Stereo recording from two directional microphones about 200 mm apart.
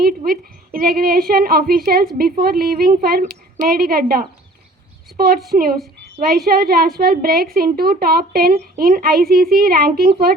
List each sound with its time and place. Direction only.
0.3 s a woman's voice: 45° right (ahead or behind)